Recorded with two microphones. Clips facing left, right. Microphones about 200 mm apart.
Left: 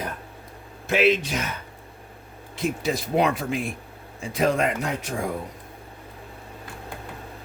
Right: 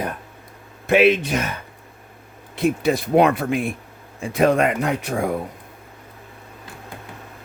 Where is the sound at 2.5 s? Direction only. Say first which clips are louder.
Right 6 dB; 60° right (ahead or behind).